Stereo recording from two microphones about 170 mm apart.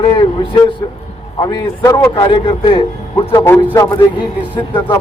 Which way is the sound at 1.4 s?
20° left (ahead or behind).